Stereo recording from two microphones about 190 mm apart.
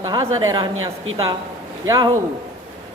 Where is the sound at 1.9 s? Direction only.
20° right (ahead or behind).